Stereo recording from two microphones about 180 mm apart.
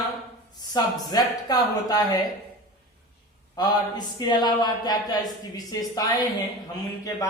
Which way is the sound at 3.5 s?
25° left (ahead or behind).